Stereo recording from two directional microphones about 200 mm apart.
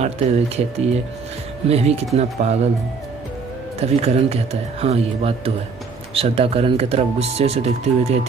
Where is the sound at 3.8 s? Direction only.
30° right (ahead or behind).